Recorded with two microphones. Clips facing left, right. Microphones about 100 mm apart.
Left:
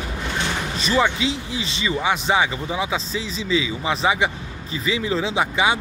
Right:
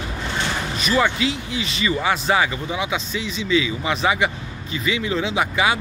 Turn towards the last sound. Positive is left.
turn(degrees=25)  # may be behind; listen again after turning